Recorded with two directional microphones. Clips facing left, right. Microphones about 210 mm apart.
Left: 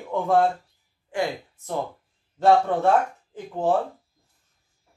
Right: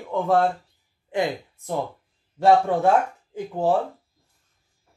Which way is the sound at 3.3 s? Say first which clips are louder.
Right 2 dB; 10° right (ahead or behind).